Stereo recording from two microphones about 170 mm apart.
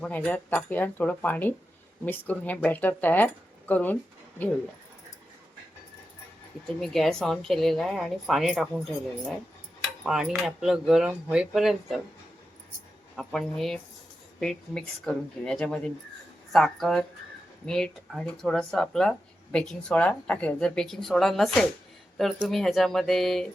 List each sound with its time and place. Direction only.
0.0 s speech: 10° left (ahead or behind)
6.7 s a woman's voice: centre (ahead or behind)
10.0 s a woman's voice: centre (ahead or behind)
13.1 s a woman's voice: centre (ahead or behind)